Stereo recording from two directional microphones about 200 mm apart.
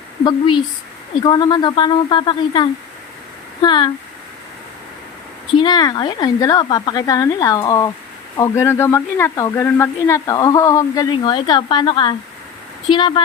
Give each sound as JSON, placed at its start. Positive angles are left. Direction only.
{"t": 0.3, "sound": "speech", "side_deg": 25}
{"t": 5.5, "sound": "speech", "side_deg": 20}